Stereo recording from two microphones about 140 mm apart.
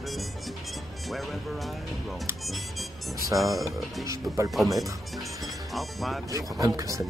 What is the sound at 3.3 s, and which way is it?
Speech, centre (ahead or behind).